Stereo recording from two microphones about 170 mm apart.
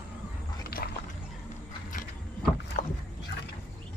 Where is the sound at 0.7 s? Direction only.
65° left (ahead or behind).